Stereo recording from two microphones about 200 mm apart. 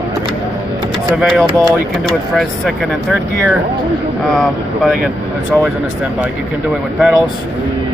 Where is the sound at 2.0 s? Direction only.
Centre (ahead or behind).